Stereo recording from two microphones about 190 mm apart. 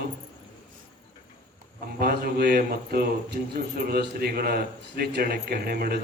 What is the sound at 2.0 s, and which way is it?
A man's voice, 55° right (ahead or behind).